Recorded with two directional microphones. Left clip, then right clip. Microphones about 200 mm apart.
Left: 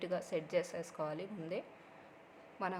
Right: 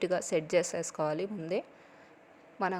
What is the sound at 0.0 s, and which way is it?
A woman's voice, 35° right (ahead or behind).